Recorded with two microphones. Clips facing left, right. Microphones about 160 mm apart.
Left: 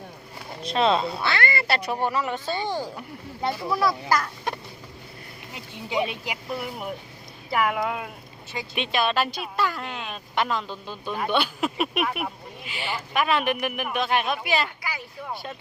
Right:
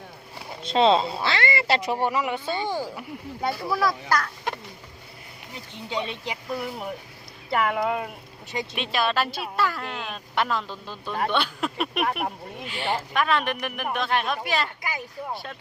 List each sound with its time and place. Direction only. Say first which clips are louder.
0.6 s speech: right 3 dB; 25° right (ahead or behind)
3.7 s speech: left 1 dB; centre (ahead or behind)
5.7 s speech: left 4 dB; 10° left (ahead or behind)